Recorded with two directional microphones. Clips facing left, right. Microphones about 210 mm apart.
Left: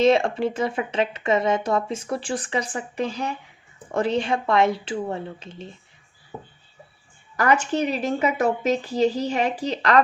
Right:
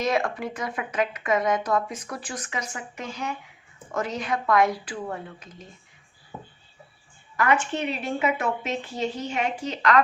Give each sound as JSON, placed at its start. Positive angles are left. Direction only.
{"t": 0.0, "sound": "speech", "side_deg": 25}
{"t": 7.3, "sound": "a woman's voice", "side_deg": 40}